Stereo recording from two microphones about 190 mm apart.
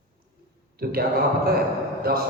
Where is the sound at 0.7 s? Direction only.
50° right (ahead or behind).